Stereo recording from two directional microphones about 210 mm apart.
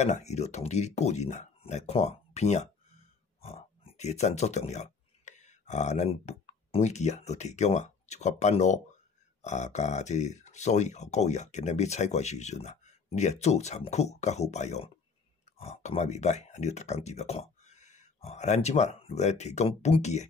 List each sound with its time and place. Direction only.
0.0 s speech: 30° left (ahead or behind)